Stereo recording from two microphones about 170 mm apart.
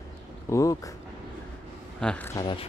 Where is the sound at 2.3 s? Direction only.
30° left (ahead or behind).